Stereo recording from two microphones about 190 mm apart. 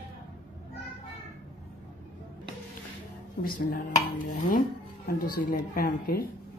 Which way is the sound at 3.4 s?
50° left (ahead or behind).